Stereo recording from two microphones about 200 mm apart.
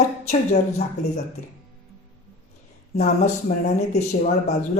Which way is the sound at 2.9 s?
35° left (ahead or behind).